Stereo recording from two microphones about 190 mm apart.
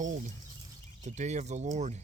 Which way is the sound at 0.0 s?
40° right (ahead or behind).